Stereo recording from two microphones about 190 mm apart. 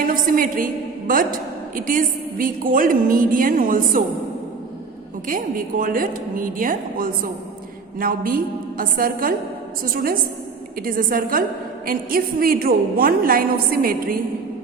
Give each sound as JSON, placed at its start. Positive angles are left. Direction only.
{"t": 0.0, "sound": "a woman's voice", "side_deg": -45}
{"t": 5.3, "sound": "a woman's voice", "side_deg": -45}